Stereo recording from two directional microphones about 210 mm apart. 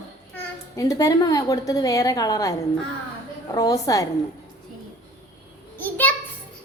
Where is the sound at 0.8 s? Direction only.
15° left (ahead or behind).